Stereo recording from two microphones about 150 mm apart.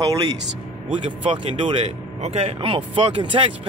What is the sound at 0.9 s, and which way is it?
Speech, 35° right (ahead or behind).